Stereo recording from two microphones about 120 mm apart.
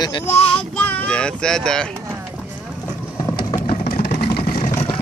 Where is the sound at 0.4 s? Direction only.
45° left (ahead or behind).